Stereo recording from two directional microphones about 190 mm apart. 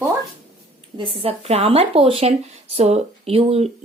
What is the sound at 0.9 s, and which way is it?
Speech, 30° right (ahead or behind).